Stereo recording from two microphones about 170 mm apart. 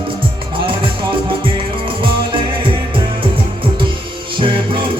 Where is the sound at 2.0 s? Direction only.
30° right (ahead or behind).